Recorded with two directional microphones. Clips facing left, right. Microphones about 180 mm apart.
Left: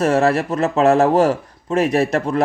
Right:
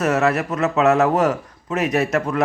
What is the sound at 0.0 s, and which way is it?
Speech, 30° left (ahead or behind).